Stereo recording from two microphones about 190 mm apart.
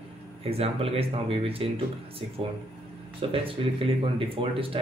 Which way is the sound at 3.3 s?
30° right (ahead or behind).